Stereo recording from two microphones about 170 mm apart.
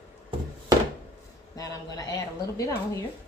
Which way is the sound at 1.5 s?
20° left (ahead or behind).